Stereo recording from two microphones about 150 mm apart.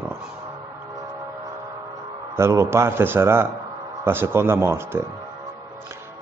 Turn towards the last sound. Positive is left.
turn(degrees=-15)  # may be behind; listen again after turning